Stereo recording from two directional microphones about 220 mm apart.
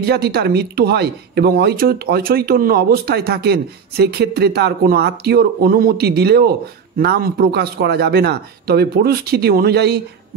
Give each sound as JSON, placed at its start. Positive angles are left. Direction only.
{"t": 0.0, "sound": "speech", "side_deg": -45}